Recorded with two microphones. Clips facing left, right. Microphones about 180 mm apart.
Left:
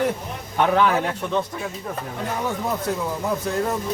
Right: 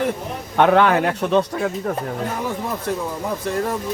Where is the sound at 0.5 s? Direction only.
70° right (ahead or behind).